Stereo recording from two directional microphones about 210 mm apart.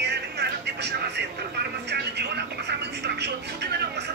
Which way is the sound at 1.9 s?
50° right (ahead or behind).